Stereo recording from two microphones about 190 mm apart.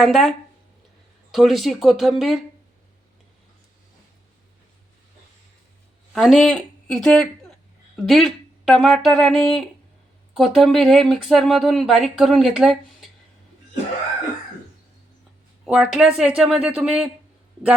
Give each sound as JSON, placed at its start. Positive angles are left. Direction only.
{"t": 0.0, "sound": "speech", "side_deg": 0}
{"t": 6.1, "sound": "speech", "side_deg": 0}
{"t": 15.6, "sound": "speech", "side_deg": -5}